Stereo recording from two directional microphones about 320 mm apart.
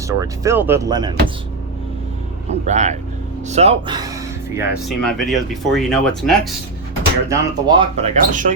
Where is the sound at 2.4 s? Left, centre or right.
Right; by 6.5 s centre.